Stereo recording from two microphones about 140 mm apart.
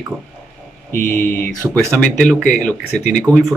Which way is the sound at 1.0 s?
15° left (ahead or behind).